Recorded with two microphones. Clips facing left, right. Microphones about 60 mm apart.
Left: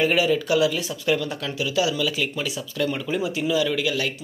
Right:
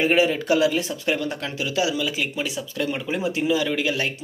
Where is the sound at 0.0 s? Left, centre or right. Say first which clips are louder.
Right 1 dB; right.